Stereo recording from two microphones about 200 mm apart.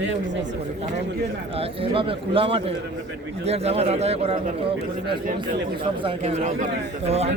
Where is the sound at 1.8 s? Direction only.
25° right (ahead or behind).